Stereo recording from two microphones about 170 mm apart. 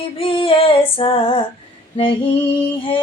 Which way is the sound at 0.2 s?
30° left (ahead or behind).